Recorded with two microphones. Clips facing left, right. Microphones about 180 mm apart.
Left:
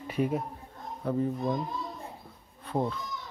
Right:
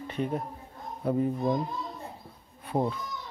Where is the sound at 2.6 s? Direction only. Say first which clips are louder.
Right 2 dB; 15° right (ahead or behind).